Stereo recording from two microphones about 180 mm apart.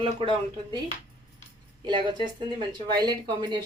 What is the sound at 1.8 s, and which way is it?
A woman's voice, 25° right (ahead or behind).